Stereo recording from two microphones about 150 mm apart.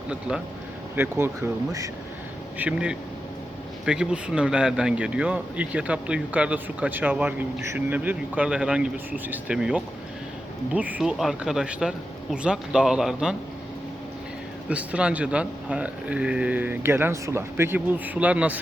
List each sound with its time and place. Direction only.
0.1 s speech: 5° right (ahead or behind)
2.6 s speech: 5° right (ahead or behind)
14.7 s speech: 10° right (ahead or behind)